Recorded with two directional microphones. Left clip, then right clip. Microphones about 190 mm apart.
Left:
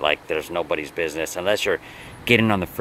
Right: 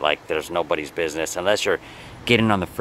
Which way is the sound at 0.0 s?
Centre (ahead or behind).